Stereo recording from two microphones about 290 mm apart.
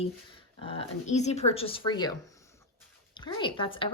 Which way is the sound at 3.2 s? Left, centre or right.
Centre.